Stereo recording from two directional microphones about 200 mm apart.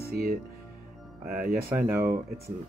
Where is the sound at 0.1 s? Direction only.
50° right (ahead or behind).